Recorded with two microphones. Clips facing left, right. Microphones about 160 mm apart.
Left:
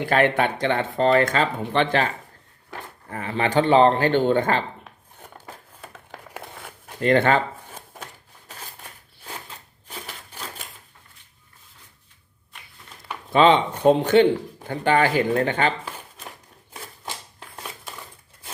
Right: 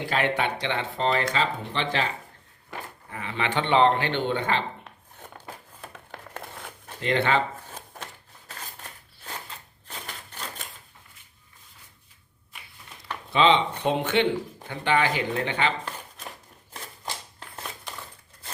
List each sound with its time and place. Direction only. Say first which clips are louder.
0.1 s speech: left 6 dB; 50° left (ahead or behind)
5.5 s crumpling: even; centre (ahead or behind)
7.0 s speech: left 5 dB; 45° left (ahead or behind)
7.6 s a sound: left 1 dB; 10° left (ahead or behind)
13.3 s speech: left 4 dB; 45° left (ahead or behind)
15.8 s a sound: even; 10° left (ahead or behind)
16.7 s scissors: left 1 dB; 5° left (ahead or behind)